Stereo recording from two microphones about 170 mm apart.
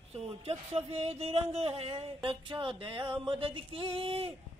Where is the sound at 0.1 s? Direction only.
35° right (ahead or behind).